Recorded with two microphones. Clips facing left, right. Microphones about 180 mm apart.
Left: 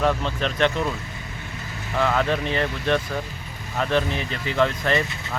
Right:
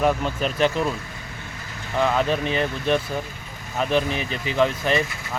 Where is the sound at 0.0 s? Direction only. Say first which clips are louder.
Right 1 dB; 10° right (ahead or behind).